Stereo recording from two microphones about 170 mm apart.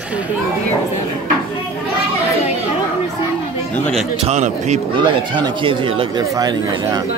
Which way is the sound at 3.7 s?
5° left (ahead or behind).